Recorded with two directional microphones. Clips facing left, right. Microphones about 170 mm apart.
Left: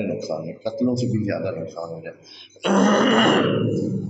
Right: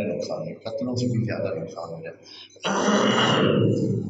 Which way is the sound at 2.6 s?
50° left (ahead or behind).